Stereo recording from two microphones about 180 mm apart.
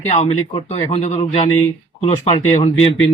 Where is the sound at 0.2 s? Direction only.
35° left (ahead or behind).